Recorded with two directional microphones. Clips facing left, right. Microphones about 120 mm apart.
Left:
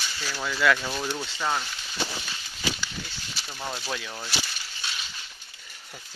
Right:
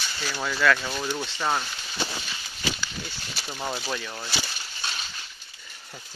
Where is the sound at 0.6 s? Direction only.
10° left (ahead or behind).